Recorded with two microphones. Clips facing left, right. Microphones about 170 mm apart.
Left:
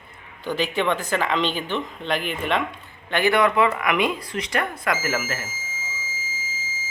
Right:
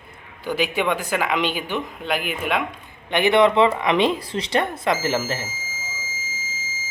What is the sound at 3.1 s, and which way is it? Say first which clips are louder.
Speech: right 3 dB; 20° right (ahead or behind).